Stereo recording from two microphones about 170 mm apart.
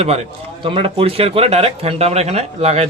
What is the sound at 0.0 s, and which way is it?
Speech, 35° right (ahead or behind).